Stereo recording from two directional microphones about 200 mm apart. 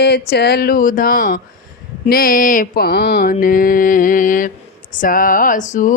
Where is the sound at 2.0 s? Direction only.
45° left (ahead or behind).